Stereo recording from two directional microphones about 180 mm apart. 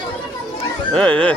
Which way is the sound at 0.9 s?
5° left (ahead or behind).